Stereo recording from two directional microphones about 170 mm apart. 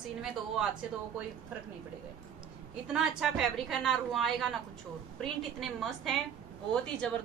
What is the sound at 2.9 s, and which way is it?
A woman's voice, 5° right (ahead or behind).